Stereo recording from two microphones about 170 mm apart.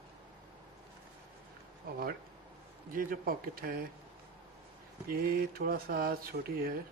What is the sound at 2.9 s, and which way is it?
Speech, 55° right (ahead or behind).